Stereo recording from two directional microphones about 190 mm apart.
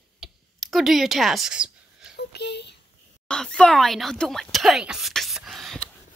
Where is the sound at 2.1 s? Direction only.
60° left (ahead or behind).